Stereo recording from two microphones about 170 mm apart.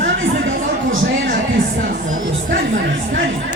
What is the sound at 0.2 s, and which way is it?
Chatter, 90° right.